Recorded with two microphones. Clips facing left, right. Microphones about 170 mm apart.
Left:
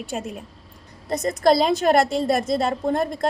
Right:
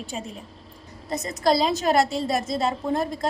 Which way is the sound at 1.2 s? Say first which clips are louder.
Left 4 dB; 50° left (ahead or behind).